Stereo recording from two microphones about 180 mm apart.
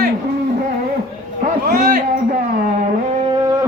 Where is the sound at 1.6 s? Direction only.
55° right (ahead or behind).